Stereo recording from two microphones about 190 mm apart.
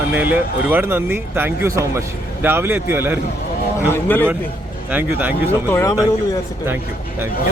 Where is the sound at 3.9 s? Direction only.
10° left (ahead or behind).